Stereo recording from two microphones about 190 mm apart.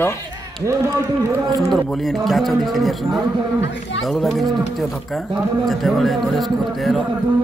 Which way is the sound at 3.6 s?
70° left (ahead or behind).